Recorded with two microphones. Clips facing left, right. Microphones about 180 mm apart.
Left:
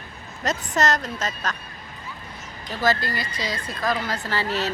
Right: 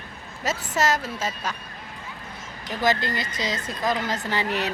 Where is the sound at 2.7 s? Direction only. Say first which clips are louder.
Even; 15° right (ahead or behind).